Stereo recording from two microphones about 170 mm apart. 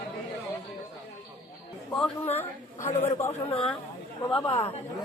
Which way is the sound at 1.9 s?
10° left (ahead or behind).